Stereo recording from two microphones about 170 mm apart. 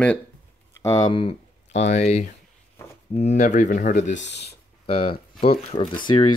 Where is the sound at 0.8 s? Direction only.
25° left (ahead or behind); by 4.1 s 50° left (ahead or behind).